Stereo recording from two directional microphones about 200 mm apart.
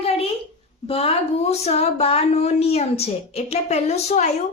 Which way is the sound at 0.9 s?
30° left (ahead or behind).